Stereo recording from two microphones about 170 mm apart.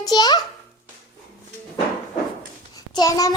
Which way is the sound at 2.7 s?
20° left (ahead or behind).